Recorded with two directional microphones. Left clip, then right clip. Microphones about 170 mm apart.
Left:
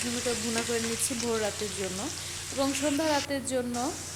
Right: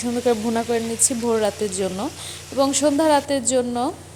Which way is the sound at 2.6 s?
25° right (ahead or behind).